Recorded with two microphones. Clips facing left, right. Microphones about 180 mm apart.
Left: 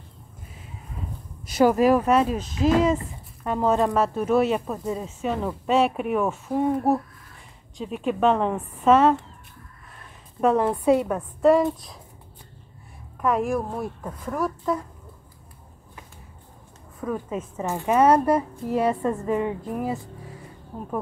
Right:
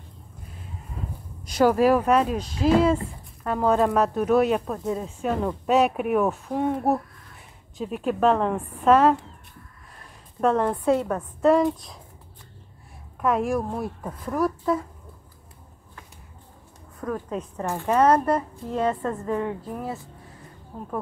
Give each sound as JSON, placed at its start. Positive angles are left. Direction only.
{"t": 1.4, "sound": "speech", "side_deg": 5}
{"t": 10.4, "sound": "speech", "side_deg": 5}
{"t": 13.2, "sound": "speech", "side_deg": 0}
{"t": 17.0, "sound": "speech", "side_deg": 5}